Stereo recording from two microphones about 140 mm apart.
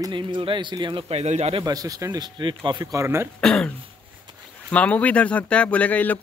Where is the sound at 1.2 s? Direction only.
50° right (ahead or behind).